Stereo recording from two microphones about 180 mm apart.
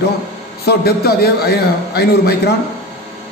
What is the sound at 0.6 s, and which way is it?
A man's voice, 60° left (ahead or behind).